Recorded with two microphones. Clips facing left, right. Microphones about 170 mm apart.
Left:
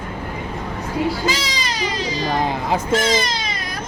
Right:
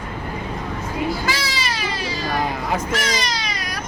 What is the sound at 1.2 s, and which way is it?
Speech, 20° left (ahead or behind).